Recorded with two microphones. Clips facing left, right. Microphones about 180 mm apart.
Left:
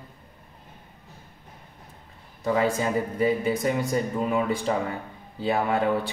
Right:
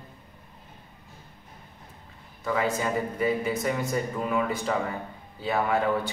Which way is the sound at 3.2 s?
30° left (ahead or behind).